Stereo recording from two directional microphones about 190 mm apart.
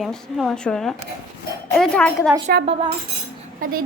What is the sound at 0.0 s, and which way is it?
A child's voice, centre (ahead or behind).